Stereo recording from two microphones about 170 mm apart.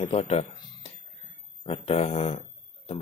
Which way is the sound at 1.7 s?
35° left (ahead or behind).